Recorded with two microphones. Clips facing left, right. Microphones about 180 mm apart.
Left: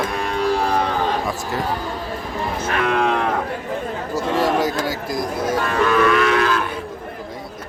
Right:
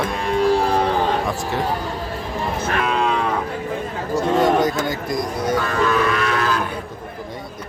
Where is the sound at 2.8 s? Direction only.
60° left (ahead or behind).